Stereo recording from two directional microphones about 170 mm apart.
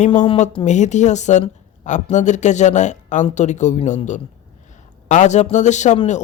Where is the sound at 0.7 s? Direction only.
45° left (ahead or behind).